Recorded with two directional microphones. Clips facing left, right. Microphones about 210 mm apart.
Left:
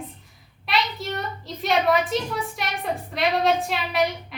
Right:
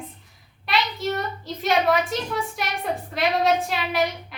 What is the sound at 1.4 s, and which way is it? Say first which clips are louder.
A woman's voice: even; centre (ahead or behind).